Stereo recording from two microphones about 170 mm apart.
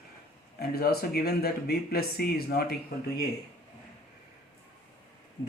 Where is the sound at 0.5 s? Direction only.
65° left (ahead or behind).